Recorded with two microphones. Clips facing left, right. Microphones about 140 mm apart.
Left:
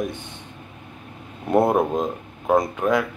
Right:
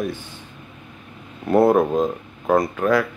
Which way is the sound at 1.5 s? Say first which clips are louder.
Right 3 dB; 20° left (ahead or behind).